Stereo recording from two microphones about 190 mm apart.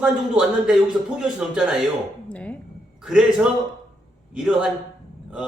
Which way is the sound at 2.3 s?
5° left (ahead or behind).